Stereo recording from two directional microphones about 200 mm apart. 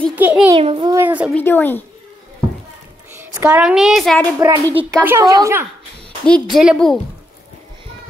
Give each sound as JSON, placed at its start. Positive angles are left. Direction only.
{"t": 0.1, "sound": "speech", "side_deg": -10}
{"t": 0.6, "sound": "a child's voice", "side_deg": -25}
{"t": 0.9, "sound": "speech", "side_deg": -10}
{"t": 1.3, "sound": "a woman's voice", "side_deg": 10}
{"t": 3.1, "sound": "a woman's voice", "side_deg": -10}
{"t": 4.4, "sound": "speech", "side_deg": -15}
{"t": 6.2, "sound": "a woman's voice", "side_deg": 0}